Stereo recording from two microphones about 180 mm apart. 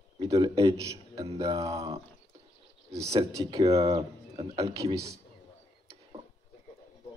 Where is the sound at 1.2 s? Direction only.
30° right (ahead or behind).